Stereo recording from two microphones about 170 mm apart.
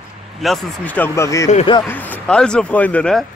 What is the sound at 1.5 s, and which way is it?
Speech, 30° left (ahead or behind).